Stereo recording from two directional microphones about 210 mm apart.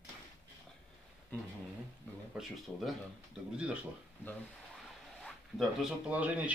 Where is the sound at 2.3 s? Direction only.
Centre (ahead or behind).